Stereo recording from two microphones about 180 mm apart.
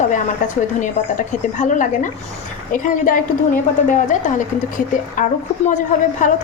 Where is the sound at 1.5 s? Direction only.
45° left (ahead or behind).